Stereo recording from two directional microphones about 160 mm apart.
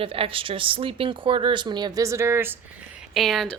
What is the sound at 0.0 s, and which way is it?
Speech, 35° right (ahead or behind).